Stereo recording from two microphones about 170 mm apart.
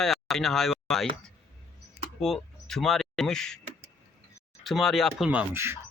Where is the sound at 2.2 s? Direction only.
Centre (ahead or behind).